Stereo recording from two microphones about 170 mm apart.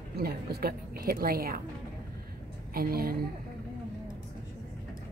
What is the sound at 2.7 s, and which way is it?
Speech, 60° right (ahead or behind).